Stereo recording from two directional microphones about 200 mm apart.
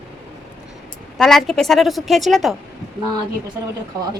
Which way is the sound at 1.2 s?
Centre (ahead or behind).